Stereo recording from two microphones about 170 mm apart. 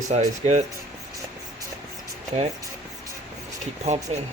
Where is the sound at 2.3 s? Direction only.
40° right (ahead or behind).